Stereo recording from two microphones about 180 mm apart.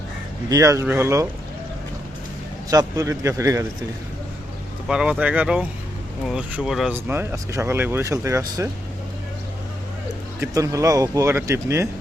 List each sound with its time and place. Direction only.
0.5 s speech: 15° right (ahead or behind)
2.6 s speech: 20° right (ahead or behind)
4.9 s speech: 5° right (ahead or behind)
7.1 s speech: 10° right (ahead or behind)
10.4 s speech: 20° right (ahead or behind)